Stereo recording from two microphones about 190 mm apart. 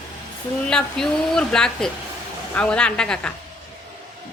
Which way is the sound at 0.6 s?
5° left (ahead or behind).